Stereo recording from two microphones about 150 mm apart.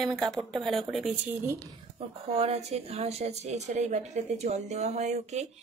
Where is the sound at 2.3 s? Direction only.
45° right (ahead or behind).